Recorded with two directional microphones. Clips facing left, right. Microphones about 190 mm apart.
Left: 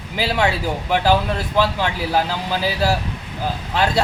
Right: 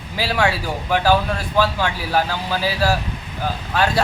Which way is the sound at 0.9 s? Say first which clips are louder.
Even; 20° left (ahead or behind).